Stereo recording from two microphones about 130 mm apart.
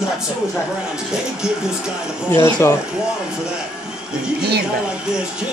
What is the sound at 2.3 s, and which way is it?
Speech, 20° left (ahead or behind).